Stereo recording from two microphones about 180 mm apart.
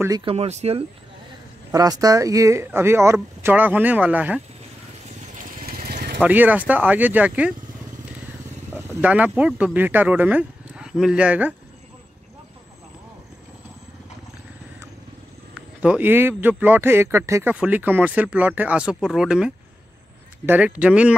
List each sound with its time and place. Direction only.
0.2 s speech: 30° right (ahead or behind)
1.7 s a man's voice: 20° right (ahead or behind)
5.6 s vehicle: 55° right (ahead or behind)
6.2 s a man's voice: 10° right (ahead or behind)
8.7 s speech: 10° right (ahead or behind)
15.5 s a man's voice: 5° right (ahead or behind)